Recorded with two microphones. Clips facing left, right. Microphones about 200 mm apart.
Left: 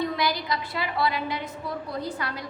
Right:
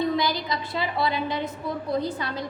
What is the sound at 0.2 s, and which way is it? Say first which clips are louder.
A woman's voice: right 1 dB; 25° right (ahead or behind).